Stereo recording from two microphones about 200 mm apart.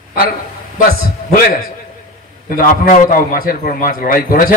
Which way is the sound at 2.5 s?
45° left (ahead or behind).